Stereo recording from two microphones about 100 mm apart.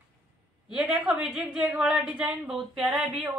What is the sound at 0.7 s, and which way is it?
A woman's voice, 10° right (ahead or behind).